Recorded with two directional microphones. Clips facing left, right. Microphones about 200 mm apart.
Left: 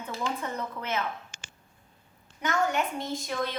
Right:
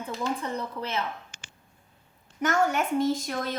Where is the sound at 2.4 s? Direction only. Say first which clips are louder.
Right 3 dB; 45° right (ahead or behind).